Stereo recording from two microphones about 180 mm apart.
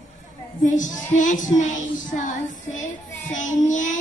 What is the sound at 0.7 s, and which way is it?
Child singing, 45° left (ahead or behind).